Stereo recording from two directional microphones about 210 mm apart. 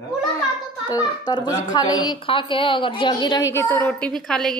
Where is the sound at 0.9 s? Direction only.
20° left (ahead or behind).